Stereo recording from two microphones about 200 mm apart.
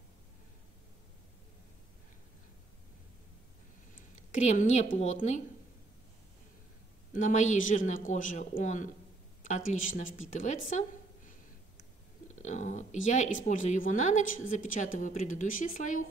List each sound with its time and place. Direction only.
3.9 s speech: 35° left (ahead or behind)
7.2 s speech: 40° left (ahead or behind)
12.4 s speech: 35° left (ahead or behind)